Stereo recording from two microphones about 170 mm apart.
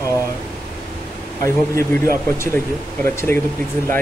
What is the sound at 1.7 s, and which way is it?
Speech, 15° left (ahead or behind).